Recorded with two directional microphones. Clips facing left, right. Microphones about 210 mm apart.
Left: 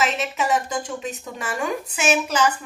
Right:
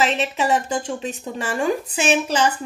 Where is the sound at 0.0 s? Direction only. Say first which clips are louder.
Right 3 dB; 30° right (ahead or behind).